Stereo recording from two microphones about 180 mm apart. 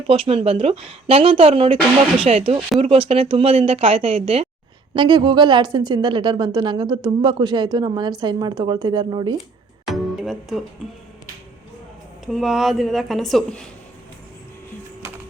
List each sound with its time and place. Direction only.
0.1 s a woman's voice: 35° right (ahead or behind)
9.8 s music: centre (ahead or behind)
12.2 s a woman's voice: centre (ahead or behind)